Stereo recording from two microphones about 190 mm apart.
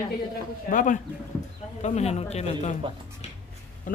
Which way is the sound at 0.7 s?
45° left (ahead or behind).